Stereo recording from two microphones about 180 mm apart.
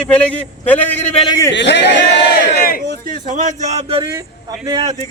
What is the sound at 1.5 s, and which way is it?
Speech, 75° left (ahead or behind).